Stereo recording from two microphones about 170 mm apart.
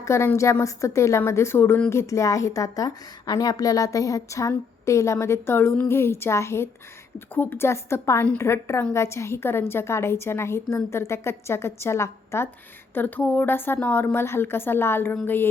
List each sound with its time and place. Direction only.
0.0 s a woman's voice: 15° left (ahead or behind)